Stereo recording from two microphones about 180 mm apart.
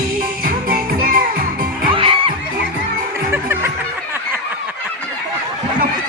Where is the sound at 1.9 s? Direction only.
30° right (ahead or behind).